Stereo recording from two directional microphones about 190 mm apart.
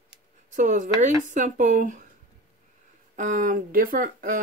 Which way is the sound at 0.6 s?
40° right (ahead or behind).